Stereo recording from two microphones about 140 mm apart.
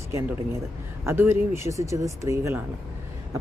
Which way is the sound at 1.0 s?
15° right (ahead or behind).